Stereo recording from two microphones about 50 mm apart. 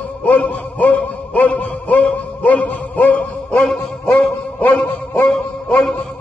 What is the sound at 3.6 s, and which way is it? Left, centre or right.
Music, centre.